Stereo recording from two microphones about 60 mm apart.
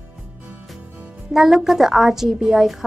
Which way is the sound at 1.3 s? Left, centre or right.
Centre.